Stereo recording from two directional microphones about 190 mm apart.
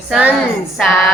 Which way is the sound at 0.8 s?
Centre (ahead or behind).